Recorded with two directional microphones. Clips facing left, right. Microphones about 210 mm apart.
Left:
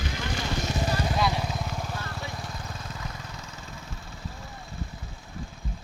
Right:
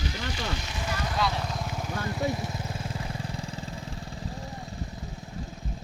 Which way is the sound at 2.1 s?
20° right (ahead or behind).